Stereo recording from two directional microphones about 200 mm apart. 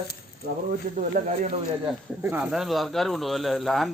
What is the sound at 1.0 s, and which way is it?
Speech, 40° right (ahead or behind).